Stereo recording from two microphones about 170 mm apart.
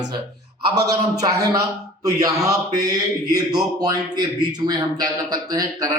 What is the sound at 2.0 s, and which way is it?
A man's voice, 20° right (ahead or behind).